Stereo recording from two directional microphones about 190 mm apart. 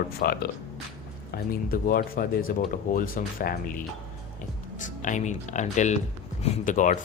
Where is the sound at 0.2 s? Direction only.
50° left (ahead or behind).